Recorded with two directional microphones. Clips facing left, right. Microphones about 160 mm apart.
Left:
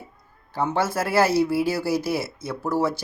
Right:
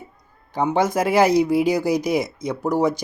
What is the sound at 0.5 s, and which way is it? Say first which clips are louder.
Speech: right 4 dB; 15° right (ahead or behind).